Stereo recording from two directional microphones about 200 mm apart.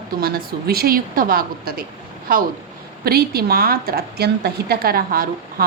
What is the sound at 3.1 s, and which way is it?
A woman's voice, 50° right (ahead or behind).